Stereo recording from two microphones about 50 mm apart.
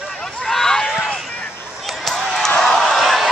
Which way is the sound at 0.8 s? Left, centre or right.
Centre.